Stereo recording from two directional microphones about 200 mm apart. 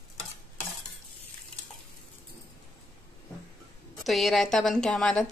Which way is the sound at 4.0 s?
Centre (ahead or behind).